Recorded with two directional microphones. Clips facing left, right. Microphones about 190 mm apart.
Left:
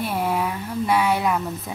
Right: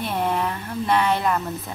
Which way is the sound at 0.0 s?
5° left (ahead or behind).